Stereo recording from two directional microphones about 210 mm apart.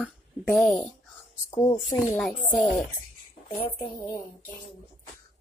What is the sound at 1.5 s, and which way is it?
Speech, 20° left (ahead or behind).